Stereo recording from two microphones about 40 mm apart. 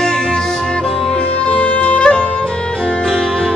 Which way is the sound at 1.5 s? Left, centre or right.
Left.